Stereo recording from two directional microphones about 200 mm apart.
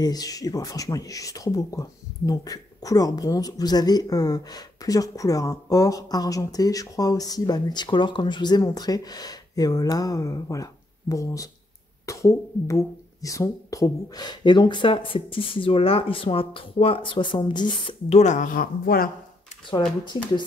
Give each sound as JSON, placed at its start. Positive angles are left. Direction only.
{"t": 0.0, "sound": "speech", "side_deg": 20}